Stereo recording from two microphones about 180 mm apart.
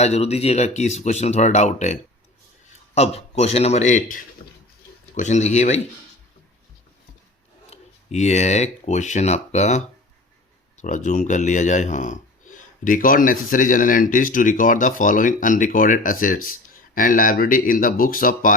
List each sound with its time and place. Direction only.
0.0 s speech: 35° left (ahead or behind)
7.7 s speech: 40° left (ahead or behind)